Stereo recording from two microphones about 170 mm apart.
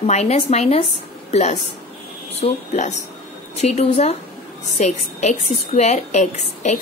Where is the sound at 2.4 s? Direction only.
45° left (ahead or behind).